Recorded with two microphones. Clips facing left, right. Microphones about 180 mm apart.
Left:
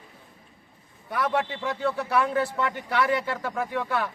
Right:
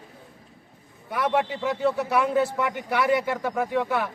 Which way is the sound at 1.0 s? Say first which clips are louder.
Right 2 dB; 15° right (ahead or behind).